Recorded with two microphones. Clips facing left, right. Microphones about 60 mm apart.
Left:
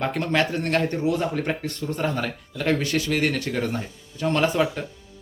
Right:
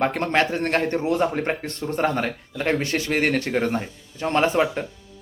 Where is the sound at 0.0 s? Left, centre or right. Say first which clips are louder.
Right 2 dB; right.